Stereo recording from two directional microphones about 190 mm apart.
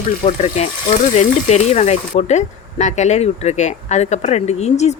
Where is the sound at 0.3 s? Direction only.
35° left (ahead or behind).